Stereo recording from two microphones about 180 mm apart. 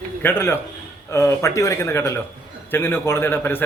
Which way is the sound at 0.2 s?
10° left (ahead or behind).